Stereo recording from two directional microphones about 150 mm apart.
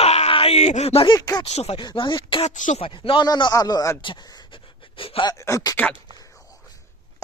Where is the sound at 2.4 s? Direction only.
55° left (ahead or behind).